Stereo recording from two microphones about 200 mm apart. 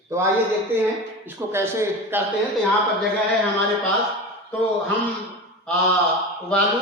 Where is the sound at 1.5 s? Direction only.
15° right (ahead or behind).